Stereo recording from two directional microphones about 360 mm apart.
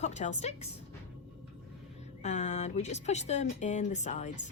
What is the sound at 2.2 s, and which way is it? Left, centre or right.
Speech, centre.